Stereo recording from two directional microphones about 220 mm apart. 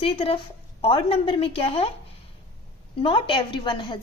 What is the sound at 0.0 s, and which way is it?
A woman's voice, 25° left (ahead or behind).